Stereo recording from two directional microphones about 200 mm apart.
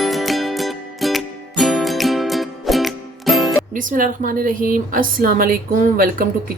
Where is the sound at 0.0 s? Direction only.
Centre (ahead or behind).